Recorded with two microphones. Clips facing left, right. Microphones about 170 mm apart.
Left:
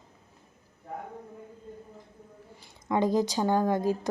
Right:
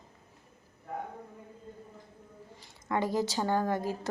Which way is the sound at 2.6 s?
15° left (ahead or behind).